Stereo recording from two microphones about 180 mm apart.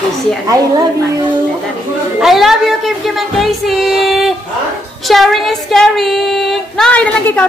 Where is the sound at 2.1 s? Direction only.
Centre (ahead or behind).